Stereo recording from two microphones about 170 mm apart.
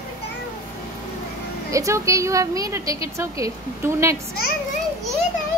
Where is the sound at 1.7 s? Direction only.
20° right (ahead or behind).